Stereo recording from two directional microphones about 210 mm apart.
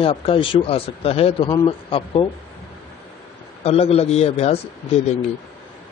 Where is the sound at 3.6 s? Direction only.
30° left (ahead or behind).